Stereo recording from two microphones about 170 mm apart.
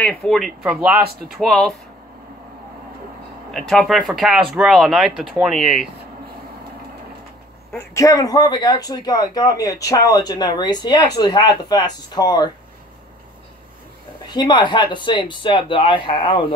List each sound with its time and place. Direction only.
0.0 s speech: 5° left (ahead or behind)
3.5 s speech: centre (ahead or behind)
7.9 s speech: 20° left (ahead or behind)
14.3 s speech: 25° left (ahead or behind)